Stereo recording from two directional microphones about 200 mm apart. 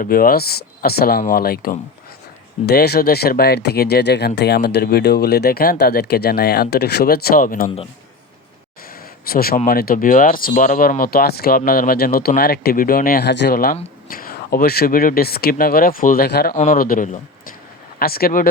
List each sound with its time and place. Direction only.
0.0 s speech: 45° left (ahead or behind)
8.9 s a sound: 50° left (ahead or behind)
9.6 s speech: 45° left (ahead or behind)
16.6 s speech: 40° left (ahead or behind)